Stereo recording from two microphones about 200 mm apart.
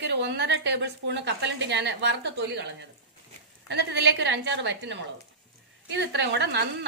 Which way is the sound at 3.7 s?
60° right (ahead or behind).